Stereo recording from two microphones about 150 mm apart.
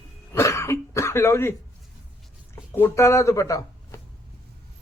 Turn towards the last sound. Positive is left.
turn(degrees=20)  # may be behind; listen again after turning